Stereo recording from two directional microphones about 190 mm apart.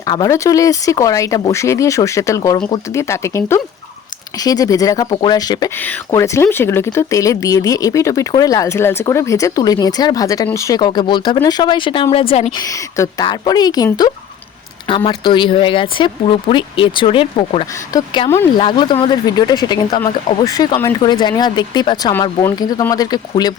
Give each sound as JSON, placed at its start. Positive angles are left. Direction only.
{"t": 0.1, "sound": "speech", "side_deg": 20}
{"t": 18.3, "sound": "speech", "side_deg": 15}
{"t": 18.6, "sound": "speech", "side_deg": 25}